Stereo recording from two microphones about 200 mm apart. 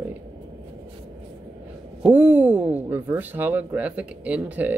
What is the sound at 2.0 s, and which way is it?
Speech, 10° right (ahead or behind).